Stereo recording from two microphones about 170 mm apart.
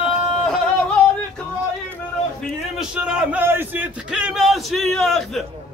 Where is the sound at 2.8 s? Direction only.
5° right (ahead or behind).